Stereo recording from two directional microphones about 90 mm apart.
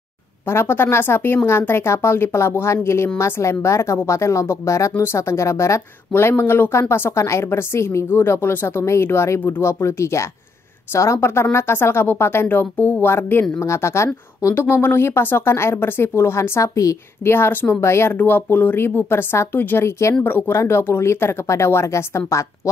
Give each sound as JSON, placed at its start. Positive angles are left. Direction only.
{"t": 0.5, "sound": "a woman's voice", "side_deg": 25}
{"t": 17.3, "sound": "a woman's voice", "side_deg": 25}